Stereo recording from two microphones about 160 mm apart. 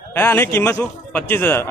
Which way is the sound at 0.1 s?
15° left (ahead or behind).